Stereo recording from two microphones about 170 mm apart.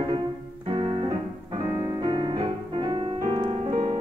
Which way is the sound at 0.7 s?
35° right (ahead or behind).